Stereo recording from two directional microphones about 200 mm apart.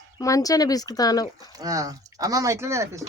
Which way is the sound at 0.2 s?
15° left (ahead or behind).